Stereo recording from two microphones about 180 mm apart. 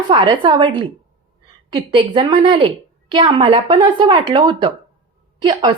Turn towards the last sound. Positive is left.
turn(degrees=-25)  # may be behind; listen again after turning